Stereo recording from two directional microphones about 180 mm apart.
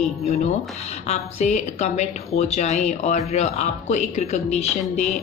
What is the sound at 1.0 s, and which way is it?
Speech, 40° left (ahead or behind).